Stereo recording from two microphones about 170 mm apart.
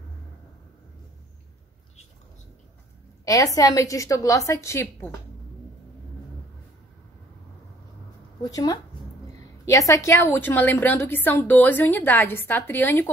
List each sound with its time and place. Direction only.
3.3 s a woman's voice: 20° left (ahead or behind)
8.5 s a woman's voice: 20° left (ahead or behind)